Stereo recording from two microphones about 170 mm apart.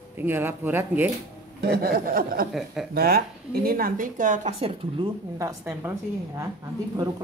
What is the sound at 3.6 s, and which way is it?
A woman's voice, 60° right (ahead or behind).